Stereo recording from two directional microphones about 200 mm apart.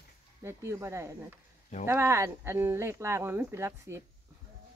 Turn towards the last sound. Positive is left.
turn(degrees=-15)  # may be behind; listen again after turning